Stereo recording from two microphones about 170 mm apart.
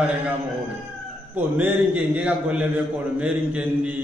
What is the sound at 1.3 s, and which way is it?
A man's voice, 10° right (ahead or behind).